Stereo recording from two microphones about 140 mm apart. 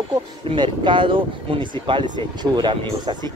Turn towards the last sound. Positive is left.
turn(degrees=-30)  # may be behind; listen again after turning